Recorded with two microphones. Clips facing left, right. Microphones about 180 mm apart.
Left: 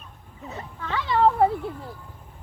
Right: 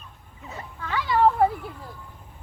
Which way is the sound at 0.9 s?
25° left (ahead or behind).